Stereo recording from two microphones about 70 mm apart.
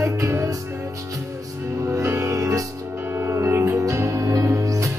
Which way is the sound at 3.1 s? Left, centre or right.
Right.